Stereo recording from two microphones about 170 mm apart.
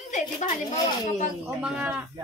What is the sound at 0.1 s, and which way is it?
Speech, 45° left (ahead or behind).